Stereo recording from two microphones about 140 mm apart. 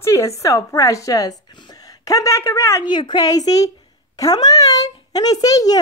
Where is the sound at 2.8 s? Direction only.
35° left (ahead or behind).